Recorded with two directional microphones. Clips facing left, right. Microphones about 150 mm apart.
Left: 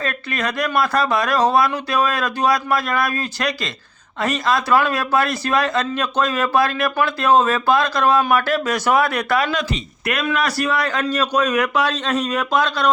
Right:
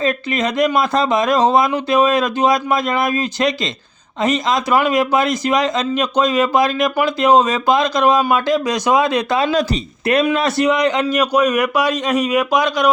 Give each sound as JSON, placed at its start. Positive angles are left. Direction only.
{"t": 0.0, "sound": "a man's voice", "side_deg": -20}